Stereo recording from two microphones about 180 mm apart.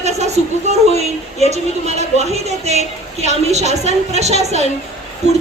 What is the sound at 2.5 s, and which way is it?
A woman's voice, 35° right (ahead or behind).